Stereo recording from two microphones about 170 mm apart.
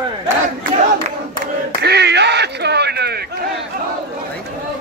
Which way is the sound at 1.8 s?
80° right.